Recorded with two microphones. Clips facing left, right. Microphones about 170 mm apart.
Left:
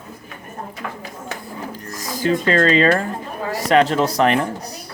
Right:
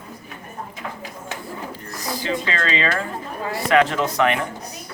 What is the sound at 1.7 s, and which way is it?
Speech, 45° left (ahead or behind).